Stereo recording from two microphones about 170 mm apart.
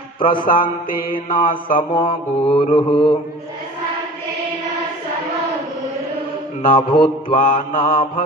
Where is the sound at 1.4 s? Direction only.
55° left (ahead or behind).